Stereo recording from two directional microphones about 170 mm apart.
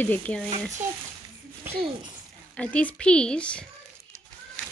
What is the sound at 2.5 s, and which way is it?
Speech, 5° left (ahead or behind).